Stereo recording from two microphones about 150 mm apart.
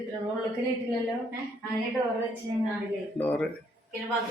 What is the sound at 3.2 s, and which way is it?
Speech, 10° left (ahead or behind).